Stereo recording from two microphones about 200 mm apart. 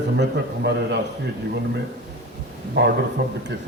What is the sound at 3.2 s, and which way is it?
Speech, 55° right (ahead or behind).